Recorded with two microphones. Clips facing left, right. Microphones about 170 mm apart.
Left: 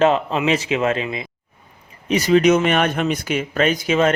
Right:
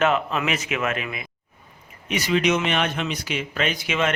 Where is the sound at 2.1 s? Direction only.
40° left (ahead or behind).